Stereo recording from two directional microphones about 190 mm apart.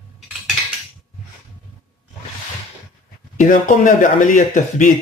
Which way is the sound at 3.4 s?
45° left (ahead or behind).